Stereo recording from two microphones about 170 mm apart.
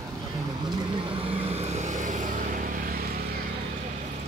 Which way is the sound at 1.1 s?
35° right (ahead or behind).